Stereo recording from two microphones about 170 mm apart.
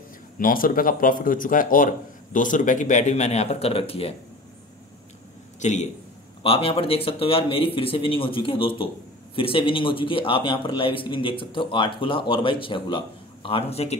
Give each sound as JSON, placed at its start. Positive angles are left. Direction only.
{"t": 0.4, "sound": "a man's voice", "side_deg": 55}
{"t": 5.6, "sound": "a man's voice", "side_deg": 45}
{"t": 6.4, "sound": "a man's voice", "side_deg": 35}